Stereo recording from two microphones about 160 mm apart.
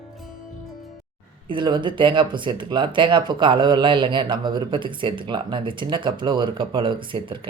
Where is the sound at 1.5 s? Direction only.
30° right (ahead or behind).